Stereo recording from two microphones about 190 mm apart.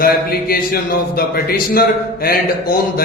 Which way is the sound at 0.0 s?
50° left (ahead or behind).